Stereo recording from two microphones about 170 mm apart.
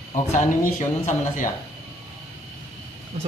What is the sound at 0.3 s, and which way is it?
Speech, 45° left (ahead or behind).